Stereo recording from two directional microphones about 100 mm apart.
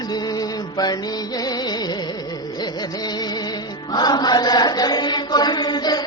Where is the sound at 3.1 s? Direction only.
45° left (ahead or behind).